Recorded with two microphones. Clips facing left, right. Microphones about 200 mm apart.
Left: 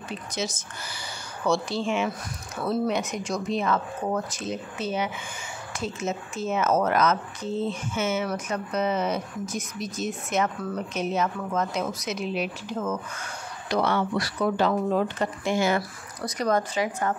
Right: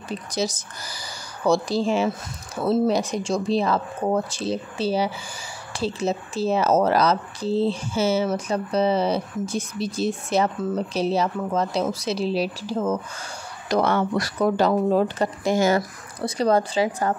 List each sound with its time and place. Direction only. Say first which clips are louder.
0.1 s speech: right 5 dB; 35° right (ahead or behind)
13.7 s speech: right 3 dB; 45° right (ahead or behind)